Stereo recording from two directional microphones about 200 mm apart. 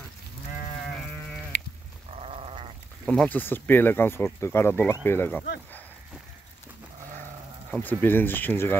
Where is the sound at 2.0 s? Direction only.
30° right (ahead or behind).